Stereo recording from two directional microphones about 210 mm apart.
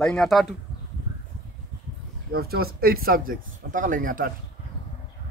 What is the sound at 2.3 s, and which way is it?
Speech, 45° right (ahead or behind).